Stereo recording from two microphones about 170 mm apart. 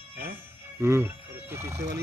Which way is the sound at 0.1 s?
65° right (ahead or behind).